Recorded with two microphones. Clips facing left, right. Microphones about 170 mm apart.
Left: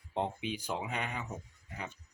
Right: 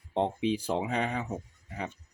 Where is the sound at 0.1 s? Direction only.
30° right (ahead or behind).